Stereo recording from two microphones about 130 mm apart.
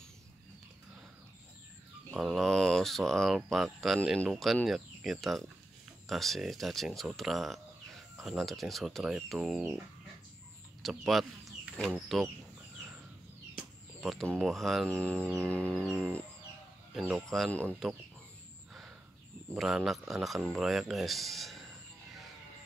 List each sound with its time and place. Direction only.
2.1 s speech: centre (ahead or behind)
10.8 s speech: centre (ahead or behind)
13.6 s a sound: centre (ahead or behind)
14.4 s speech: centre (ahead or behind)
14.9 s livestock: 10° left (ahead or behind)
17.1 s speech: centre (ahead or behind)
17.5 s livestock: 10° left (ahead or behind)
19.5 s speech: 5° right (ahead or behind)